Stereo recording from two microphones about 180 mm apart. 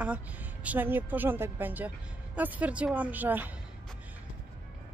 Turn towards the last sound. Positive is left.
turn(degrees=-10)  # may be behind; listen again after turning